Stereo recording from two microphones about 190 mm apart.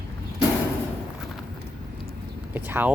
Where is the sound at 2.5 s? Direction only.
10° right (ahead or behind).